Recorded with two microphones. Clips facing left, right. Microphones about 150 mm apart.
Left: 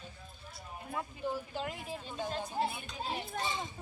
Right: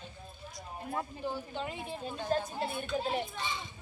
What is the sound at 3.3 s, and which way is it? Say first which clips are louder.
Speech: left 2 dB; 45° left (ahead or behind).